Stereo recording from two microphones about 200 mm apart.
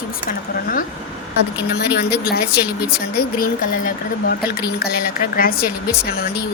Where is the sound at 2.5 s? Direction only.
5° right (ahead or behind).